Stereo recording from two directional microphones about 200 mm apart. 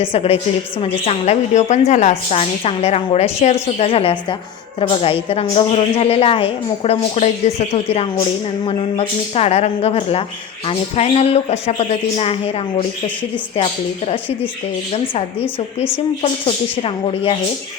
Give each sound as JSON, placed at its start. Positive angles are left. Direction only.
{"t": 0.1, "sound": "a woman's voice", "side_deg": 30}
{"t": 15.5, "sound": "speech", "side_deg": 10}
{"t": 16.2, "sound": "a woman's voice", "side_deg": 25}